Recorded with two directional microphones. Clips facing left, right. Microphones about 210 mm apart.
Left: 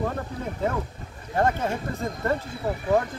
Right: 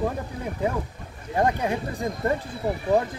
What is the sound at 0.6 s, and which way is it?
Speech, 15° right (ahead or behind).